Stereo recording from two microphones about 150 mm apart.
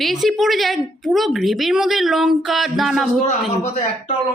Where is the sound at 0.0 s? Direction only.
Centre (ahead or behind).